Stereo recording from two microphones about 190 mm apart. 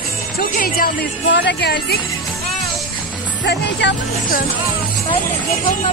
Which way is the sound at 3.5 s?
60° left (ahead or behind).